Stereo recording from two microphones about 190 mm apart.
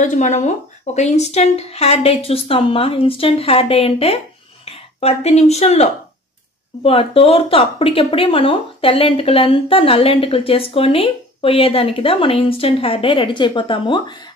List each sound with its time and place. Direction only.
0.0 s a woman's voice: 40° left (ahead or behind); by 14.3 s 25° left (ahead or behind)